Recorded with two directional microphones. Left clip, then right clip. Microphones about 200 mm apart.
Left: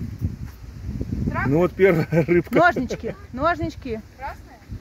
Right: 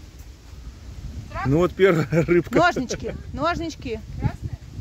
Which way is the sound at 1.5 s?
10° right (ahead or behind).